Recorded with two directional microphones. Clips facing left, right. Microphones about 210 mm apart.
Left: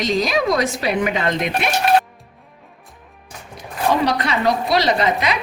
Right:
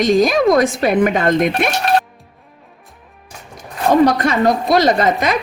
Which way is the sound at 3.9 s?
45° right (ahead or behind).